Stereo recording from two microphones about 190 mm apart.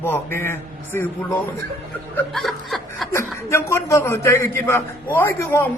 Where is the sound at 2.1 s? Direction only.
Centre (ahead or behind).